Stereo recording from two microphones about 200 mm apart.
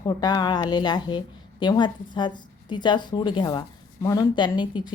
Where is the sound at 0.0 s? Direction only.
20° left (ahead or behind).